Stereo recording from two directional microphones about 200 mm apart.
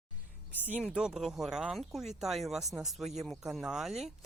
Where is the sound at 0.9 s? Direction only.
5° right (ahead or behind).